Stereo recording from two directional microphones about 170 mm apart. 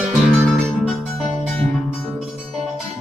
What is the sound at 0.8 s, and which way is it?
Music, 5° right (ahead or behind).